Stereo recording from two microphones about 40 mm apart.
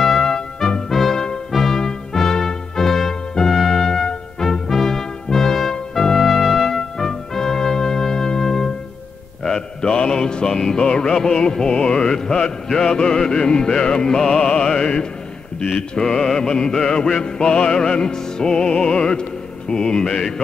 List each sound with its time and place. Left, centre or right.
0.0 s music: centre
4.4 s brass instrument: centre
6.4 s music: centre
6.7 s music: centre